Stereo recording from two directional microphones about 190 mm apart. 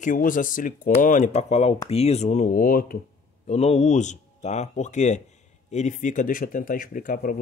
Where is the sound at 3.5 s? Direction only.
35° left (ahead or behind).